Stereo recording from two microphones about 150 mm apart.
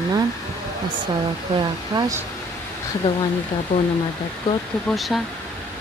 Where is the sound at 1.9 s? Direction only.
30° right (ahead or behind).